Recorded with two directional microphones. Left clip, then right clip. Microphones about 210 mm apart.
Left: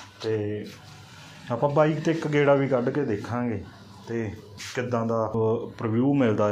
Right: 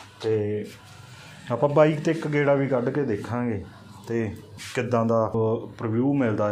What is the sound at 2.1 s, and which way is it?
Speech, 5° left (ahead or behind).